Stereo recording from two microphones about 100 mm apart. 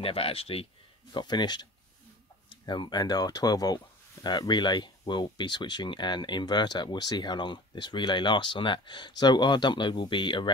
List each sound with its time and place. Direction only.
0.0 s speech: 75° left (ahead or behind)
1.1 s speech: 45° left (ahead or behind)